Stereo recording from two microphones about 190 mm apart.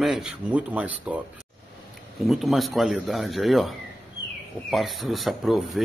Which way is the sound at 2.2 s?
Centre (ahead or behind).